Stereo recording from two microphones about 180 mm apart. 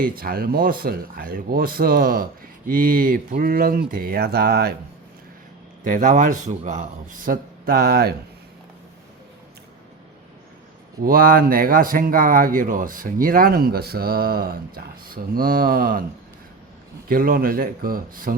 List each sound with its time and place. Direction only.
0.0 s speech: 55° right (ahead or behind)
5.8 s speech: 45° right (ahead or behind)
11.0 s speech: 50° right (ahead or behind)
17.1 s speech: 55° right (ahead or behind)